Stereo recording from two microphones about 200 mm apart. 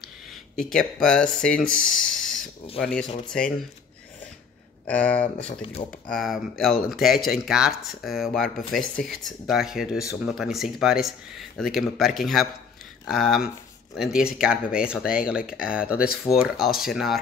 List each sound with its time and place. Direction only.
1.0 s speech: 5° left (ahead or behind)
4.8 s speech: 5° left (ahead or behind)
5.5 s speech: 30° left (ahead or behind)
5.9 s speech: centre (ahead or behind)